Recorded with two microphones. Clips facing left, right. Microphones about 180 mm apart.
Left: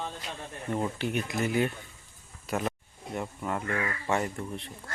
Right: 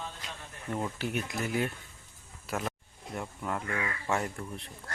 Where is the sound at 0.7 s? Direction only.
Centre (ahead or behind).